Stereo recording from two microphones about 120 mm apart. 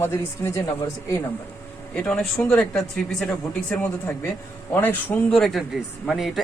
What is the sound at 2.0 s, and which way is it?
Speech, 5° left (ahead or behind).